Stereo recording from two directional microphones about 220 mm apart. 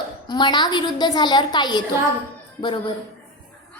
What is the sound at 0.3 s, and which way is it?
A woman's voice, 20° left (ahead or behind).